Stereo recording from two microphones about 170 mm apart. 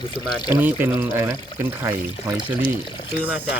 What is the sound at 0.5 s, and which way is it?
Speech, 10° right (ahead or behind).